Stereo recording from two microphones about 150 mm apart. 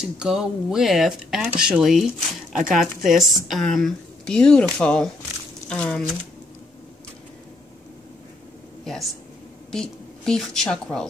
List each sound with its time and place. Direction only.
0.0 s a woman's voice: 5° right (ahead or behind)
8.8 s a woman's voice: centre (ahead or behind)